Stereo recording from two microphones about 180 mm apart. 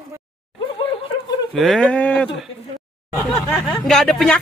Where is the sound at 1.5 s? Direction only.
Centre (ahead or behind).